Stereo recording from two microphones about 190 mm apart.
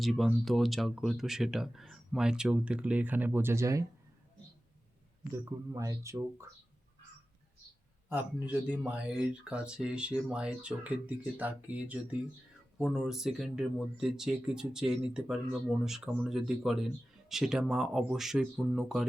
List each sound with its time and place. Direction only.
0.0 s speech: centre (ahead or behind); by 3.8 s 15° right (ahead or behind)
5.3 s speech: 15° right (ahead or behind)
8.7 s speech: 5° right (ahead or behind)